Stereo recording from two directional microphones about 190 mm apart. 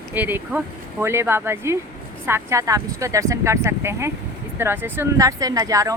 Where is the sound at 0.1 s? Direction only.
10° right (ahead or behind).